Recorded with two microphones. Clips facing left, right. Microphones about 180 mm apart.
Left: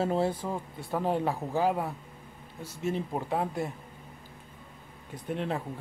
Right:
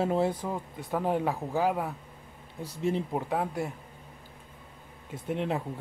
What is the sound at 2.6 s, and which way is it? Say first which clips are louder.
Speech: right 3 dB; 30° right (ahead or behind).